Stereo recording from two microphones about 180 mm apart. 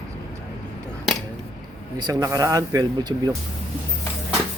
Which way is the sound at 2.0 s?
20° right (ahead or behind).